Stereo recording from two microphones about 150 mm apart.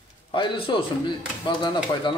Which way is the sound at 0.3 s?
35° left (ahead or behind).